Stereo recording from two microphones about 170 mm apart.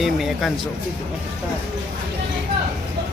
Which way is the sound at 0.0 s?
Centre (ahead or behind).